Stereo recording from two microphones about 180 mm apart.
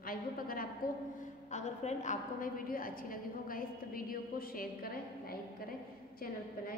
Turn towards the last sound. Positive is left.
turn(degrees=55)  # may be behind; listen again after turning